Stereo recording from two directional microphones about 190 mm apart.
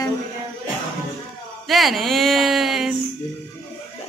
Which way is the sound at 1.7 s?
Centre (ahead or behind).